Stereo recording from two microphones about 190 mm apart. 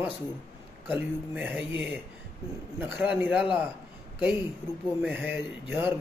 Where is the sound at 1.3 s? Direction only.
5° right (ahead or behind).